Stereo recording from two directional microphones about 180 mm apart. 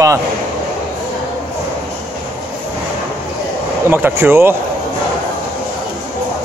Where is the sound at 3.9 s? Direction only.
10° right (ahead or behind).